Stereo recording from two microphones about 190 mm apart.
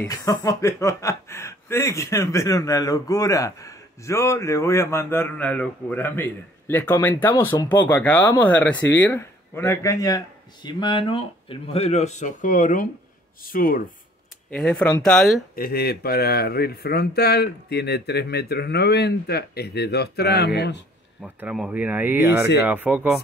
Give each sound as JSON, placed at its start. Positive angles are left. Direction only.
{"t": 0.0, "sound": "a man's voice", "side_deg": 15}
{"t": 14.5, "sound": "speech", "side_deg": 5}
{"t": 15.5, "sound": "speech", "side_deg": 55}
{"t": 21.2, "sound": "speech", "side_deg": -5}